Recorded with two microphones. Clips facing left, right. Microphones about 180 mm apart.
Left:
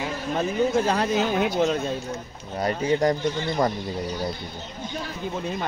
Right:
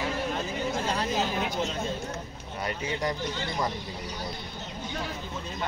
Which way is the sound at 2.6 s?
40° left (ahead or behind).